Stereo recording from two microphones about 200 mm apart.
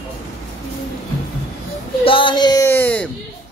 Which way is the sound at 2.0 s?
25° left (ahead or behind).